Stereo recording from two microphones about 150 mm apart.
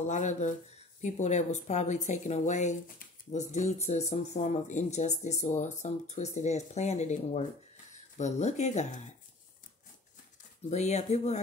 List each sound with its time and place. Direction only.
0.0 s speech: 50° left (ahead or behind)
10.7 s speech: 50° left (ahead or behind)